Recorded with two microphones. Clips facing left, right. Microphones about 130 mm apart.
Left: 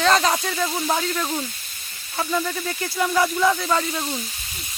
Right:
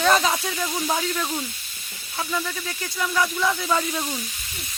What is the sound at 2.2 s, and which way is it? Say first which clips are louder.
Speech: left 4 dB; 15° left (ahead or behind).